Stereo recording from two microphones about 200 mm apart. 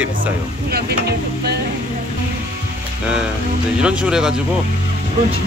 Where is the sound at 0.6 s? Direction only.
50° right (ahead or behind).